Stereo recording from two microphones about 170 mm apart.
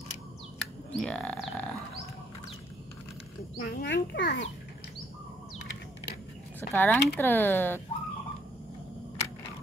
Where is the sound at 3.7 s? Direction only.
90° left.